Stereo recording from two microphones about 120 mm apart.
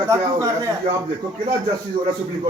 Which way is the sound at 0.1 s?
30° right (ahead or behind).